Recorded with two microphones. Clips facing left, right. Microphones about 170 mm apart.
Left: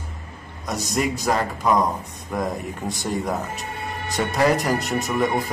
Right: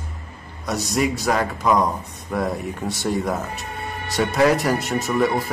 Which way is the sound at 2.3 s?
15° left (ahead or behind).